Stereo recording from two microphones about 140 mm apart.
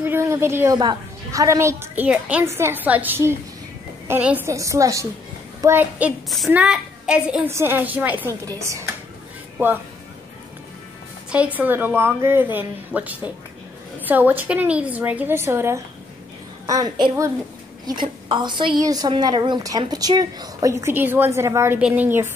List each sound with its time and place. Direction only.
0.0 s a woman's voice: 20° right (ahead or behind)
4.5 s a woman's voice: 20° right (ahead or behind)
11.2 s a woman's voice: 10° right (ahead or behind)